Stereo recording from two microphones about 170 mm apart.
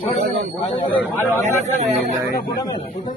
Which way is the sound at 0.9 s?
10° left (ahead or behind).